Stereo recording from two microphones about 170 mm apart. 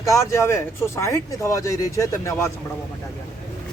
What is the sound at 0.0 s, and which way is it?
Speech, 20° left (ahead or behind).